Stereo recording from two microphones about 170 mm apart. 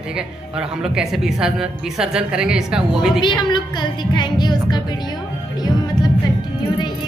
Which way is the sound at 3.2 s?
25° left (ahead or behind).